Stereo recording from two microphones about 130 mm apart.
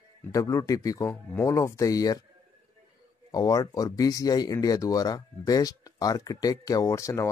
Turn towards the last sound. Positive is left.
turn(degrees=20)  # may be behind; listen again after turning